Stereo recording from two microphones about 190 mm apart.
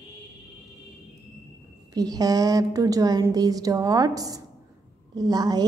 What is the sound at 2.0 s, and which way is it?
A woman's voice, 20° right (ahead or behind).